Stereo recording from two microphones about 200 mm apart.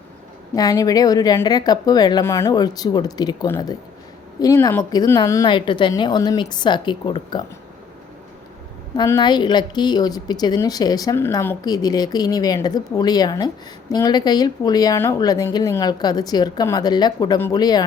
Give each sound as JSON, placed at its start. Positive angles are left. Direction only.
{"t": 0.5, "sound": "a woman's voice", "side_deg": 20}
{"t": 9.0, "sound": "a woman's voice", "side_deg": 20}